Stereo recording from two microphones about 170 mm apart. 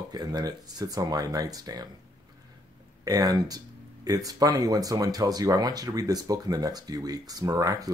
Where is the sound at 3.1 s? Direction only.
20° right (ahead or behind).